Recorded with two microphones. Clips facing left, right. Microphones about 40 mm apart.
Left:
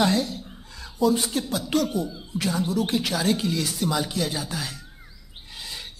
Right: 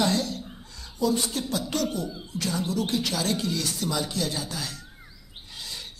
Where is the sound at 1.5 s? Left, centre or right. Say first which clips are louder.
Left 5 dB; centre.